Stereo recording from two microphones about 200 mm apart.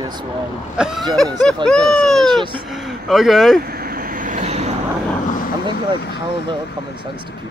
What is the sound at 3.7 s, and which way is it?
Vehicle, 50° right (ahead or behind).